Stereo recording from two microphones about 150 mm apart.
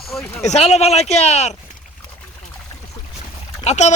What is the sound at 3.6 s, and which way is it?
Speech, 50° left (ahead or behind).